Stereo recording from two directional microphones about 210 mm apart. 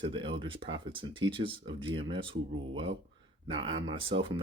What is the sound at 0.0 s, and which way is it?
Speech, 25° right (ahead or behind).